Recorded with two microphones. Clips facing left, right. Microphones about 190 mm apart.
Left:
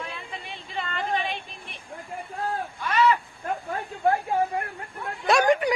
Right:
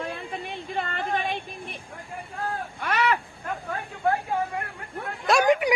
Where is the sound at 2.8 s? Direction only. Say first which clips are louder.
Left 3 dB; 65° right (ahead or behind).